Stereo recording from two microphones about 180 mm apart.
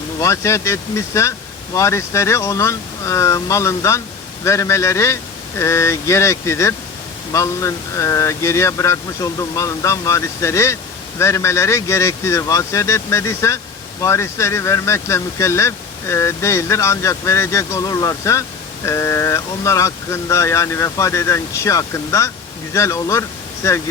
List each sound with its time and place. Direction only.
0.2 s speech: 15° left (ahead or behind)